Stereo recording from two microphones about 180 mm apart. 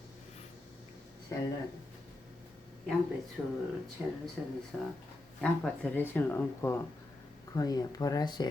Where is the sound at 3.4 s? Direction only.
5° left (ahead or behind).